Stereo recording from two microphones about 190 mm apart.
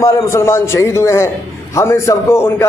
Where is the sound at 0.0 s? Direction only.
15° left (ahead or behind).